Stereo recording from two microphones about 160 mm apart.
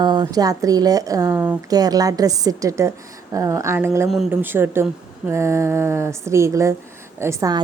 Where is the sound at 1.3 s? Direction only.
10° right (ahead or behind).